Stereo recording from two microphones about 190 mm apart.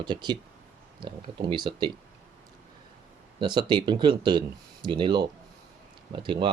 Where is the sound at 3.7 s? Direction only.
25° right (ahead or behind).